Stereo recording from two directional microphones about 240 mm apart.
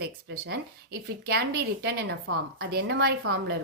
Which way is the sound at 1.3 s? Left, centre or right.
Right.